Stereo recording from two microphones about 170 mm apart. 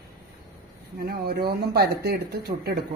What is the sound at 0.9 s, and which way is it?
Speech, 65° right (ahead or behind).